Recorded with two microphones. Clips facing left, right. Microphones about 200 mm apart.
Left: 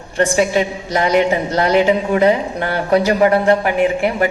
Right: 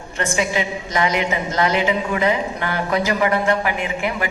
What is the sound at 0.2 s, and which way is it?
A woman's voice, 40° left (ahead or behind).